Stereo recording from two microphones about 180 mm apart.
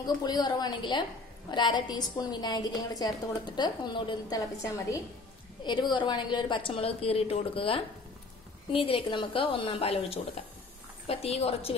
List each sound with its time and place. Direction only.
0.0 s a woman's voice: 20° left (ahead or behind)